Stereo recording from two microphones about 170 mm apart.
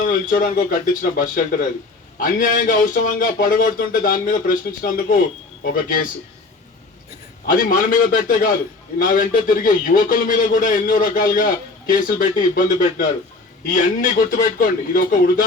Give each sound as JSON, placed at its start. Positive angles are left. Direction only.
{"t": 0.0, "sound": "a man's voice", "side_deg": 55}
{"t": 7.4, "sound": "a man's voice", "side_deg": 50}